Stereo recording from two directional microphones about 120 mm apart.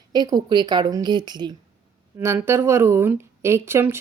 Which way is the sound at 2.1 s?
20° right (ahead or behind).